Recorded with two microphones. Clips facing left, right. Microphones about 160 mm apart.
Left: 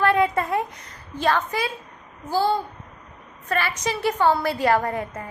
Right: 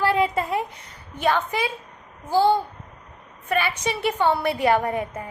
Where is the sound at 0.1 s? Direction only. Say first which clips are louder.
Left 1 dB; 25° right (ahead or behind).